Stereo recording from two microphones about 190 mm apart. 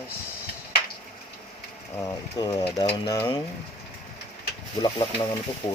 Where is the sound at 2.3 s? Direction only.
20° left (ahead or behind).